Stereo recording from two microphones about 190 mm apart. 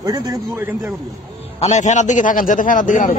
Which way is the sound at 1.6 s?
40° left (ahead or behind).